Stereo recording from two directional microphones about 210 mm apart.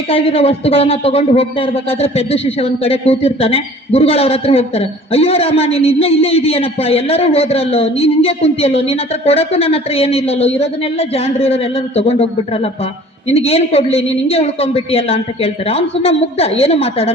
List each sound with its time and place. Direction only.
0.1 s speech: 30° left (ahead or behind)